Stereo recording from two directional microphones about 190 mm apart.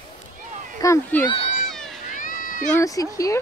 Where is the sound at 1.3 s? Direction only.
30° left (ahead or behind).